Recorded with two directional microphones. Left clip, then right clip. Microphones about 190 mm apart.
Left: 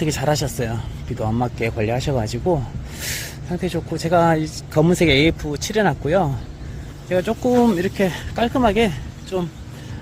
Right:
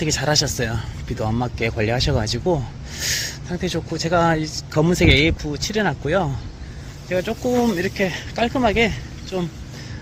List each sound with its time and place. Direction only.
0.0 s speech: 5° left (ahead or behind)